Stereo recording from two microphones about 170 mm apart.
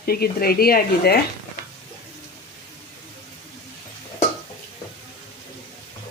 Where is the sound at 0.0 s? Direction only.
60° left (ahead or behind).